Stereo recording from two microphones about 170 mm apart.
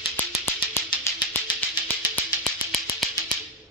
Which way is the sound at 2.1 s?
Centre (ahead or behind).